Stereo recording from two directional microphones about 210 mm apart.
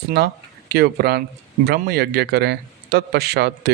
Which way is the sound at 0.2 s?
50° right (ahead or behind).